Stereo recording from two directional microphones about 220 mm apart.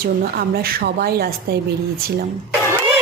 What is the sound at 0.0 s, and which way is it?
Speech, 45° right (ahead or behind).